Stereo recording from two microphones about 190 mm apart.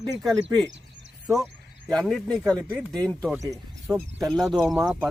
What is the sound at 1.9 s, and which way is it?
Speech, centre (ahead or behind).